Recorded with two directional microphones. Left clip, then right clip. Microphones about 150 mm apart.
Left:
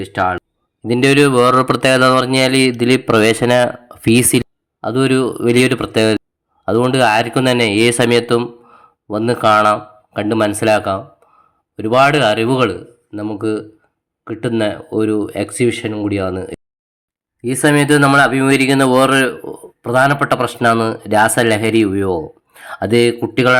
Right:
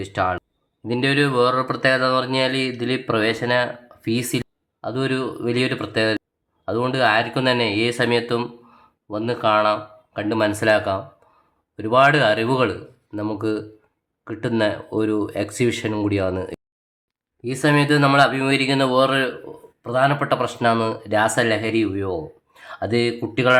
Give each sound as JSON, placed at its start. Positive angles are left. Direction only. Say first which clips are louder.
{"t": 0.0, "sound": "speech", "louder": "left 5 dB", "side_deg": 20}
{"t": 0.8, "sound": "speech", "louder": "left 8 dB", "side_deg": 40}
{"t": 13.1, "sound": "speech", "louder": "left 4 dB", "side_deg": 10}
{"t": 17.4, "sound": "speech", "louder": "left 5 dB", "side_deg": 40}